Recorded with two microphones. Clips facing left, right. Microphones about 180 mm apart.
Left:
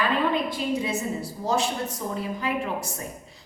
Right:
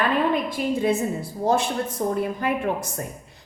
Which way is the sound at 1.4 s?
55° right (ahead or behind).